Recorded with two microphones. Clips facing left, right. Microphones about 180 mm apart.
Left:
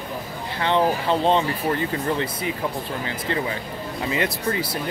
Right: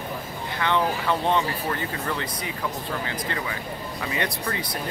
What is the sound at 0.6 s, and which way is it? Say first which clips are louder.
Speech: left 4 dB; 20° left (ahead or behind).